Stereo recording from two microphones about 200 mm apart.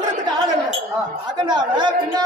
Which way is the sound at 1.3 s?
20° right (ahead or behind).